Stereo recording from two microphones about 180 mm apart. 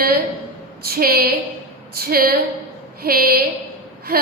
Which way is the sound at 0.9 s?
55° right (ahead or behind).